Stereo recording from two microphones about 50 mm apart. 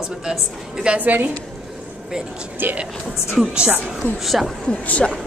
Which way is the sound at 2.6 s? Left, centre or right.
Right.